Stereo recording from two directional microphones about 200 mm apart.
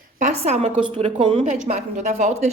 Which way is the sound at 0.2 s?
35° right (ahead or behind).